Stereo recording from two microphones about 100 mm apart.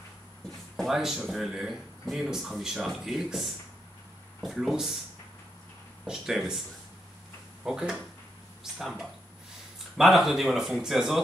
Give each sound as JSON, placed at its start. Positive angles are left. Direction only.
{"t": 0.7, "sound": "speech", "side_deg": 0}
{"t": 6.0, "sound": "speech", "side_deg": -5}
{"t": 7.6, "sound": "speech", "side_deg": -5}